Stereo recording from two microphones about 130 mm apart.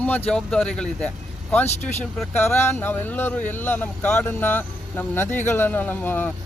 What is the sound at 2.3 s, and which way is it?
Speech, 15° left (ahead or behind).